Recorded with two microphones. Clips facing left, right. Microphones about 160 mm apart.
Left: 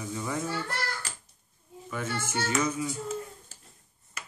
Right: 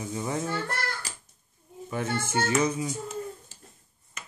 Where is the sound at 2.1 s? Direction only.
50° right (ahead or behind).